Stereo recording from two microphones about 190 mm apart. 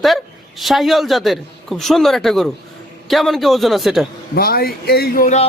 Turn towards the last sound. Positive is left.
turn(degrees=50)  # may be behind; listen again after turning